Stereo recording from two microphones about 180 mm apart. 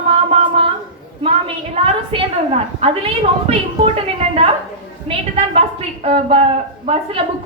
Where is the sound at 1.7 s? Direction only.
35° right (ahead or behind).